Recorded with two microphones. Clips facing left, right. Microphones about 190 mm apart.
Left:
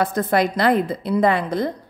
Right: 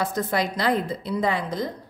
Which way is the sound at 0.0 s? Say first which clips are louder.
Left 6 dB; 55° left (ahead or behind).